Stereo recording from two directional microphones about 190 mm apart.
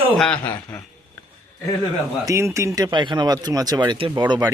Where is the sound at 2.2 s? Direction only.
15° right (ahead or behind).